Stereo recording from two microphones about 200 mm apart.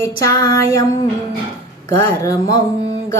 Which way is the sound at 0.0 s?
15° left (ahead or behind).